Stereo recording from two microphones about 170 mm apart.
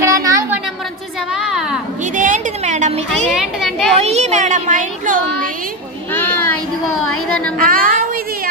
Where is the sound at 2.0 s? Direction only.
50° right (ahead or behind).